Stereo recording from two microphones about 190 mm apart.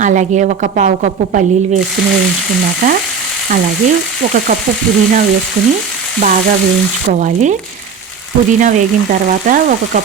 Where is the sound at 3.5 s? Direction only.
45° right (ahead or behind).